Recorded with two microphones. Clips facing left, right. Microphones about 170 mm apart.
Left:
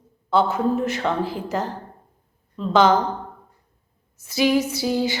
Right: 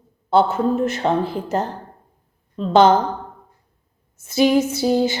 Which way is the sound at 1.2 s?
55° right (ahead or behind).